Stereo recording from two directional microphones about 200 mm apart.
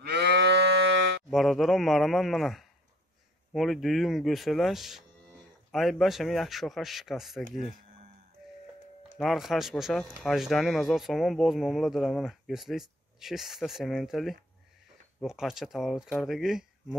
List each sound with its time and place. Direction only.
0.0 s moo: 55° right (ahead or behind)
1.3 s speech: centre (ahead or behind)
8.4 s music: centre (ahead or behind)
9.2 s speech: centre (ahead or behind)